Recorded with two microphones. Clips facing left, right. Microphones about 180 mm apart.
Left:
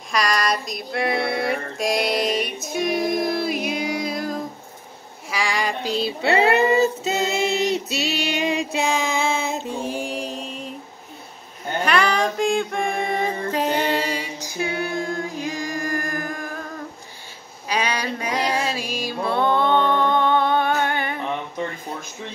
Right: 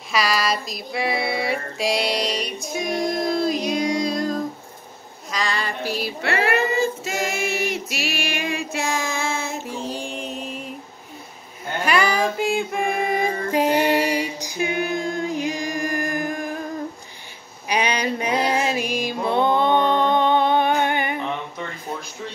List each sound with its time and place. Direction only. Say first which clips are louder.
0.1 s female singing: even; 5° right (ahead or behind)
5.3 s child singing: left 2 dB; 10° left (ahead or behind)
5.9 s child singing: left 5 dB; 25° left (ahead or behind)
7.7 s child singing: left 3 dB; 25° left (ahead or behind); by 10.2 s 5° left (ahead or behind)
10.3 s a sound: even; 5° right (ahead or behind)
11.8 s music: even; 5° right (ahead or behind)
17.6 s music: right 2 dB; 20° right (ahead or behind)